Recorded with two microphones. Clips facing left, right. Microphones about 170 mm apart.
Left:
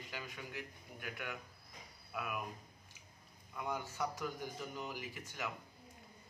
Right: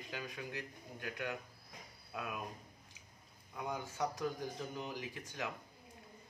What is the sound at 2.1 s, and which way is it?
Speech, 20° right (ahead or behind).